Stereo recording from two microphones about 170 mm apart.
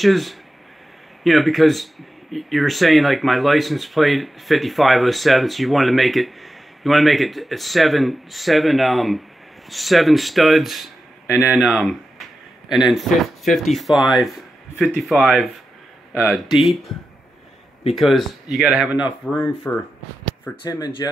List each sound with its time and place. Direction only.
0.0 s speech: centre (ahead or behind)
17.9 s speech: centre (ahead or behind)
19.2 s speech: 10° left (ahead or behind)
20.6 s speech: 25° left (ahead or behind)